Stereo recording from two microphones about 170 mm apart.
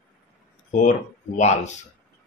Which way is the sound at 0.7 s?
45° left (ahead or behind).